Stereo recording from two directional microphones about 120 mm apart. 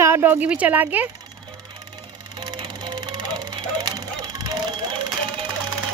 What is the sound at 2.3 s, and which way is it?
Music, 40° right (ahead or behind).